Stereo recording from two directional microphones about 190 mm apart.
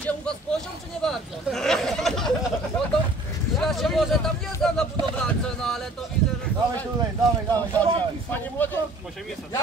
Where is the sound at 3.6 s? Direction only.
Centre (ahead or behind).